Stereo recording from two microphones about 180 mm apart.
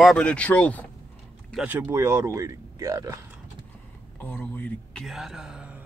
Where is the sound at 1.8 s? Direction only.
15° right (ahead or behind).